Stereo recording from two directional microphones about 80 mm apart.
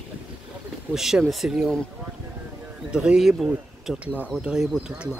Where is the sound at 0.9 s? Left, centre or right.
Centre.